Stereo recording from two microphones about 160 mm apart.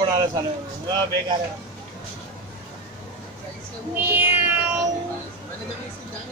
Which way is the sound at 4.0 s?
15° right (ahead or behind).